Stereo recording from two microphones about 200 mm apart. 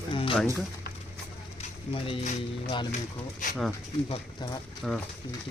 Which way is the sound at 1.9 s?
25° left (ahead or behind).